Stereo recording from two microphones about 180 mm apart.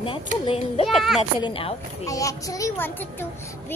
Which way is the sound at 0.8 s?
Centre (ahead or behind).